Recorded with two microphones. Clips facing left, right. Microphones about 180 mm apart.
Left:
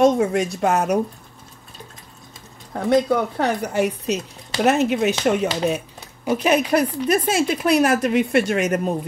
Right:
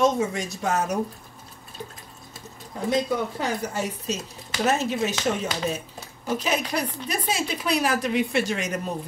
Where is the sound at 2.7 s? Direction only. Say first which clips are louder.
Left 6 dB; 65° left (ahead or behind).